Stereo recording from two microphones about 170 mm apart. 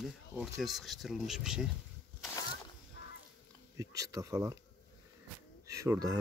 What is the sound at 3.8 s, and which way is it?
Speech, 20° right (ahead or behind).